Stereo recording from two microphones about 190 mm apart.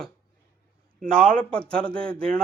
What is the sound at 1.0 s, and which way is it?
Speech, 50° right (ahead or behind).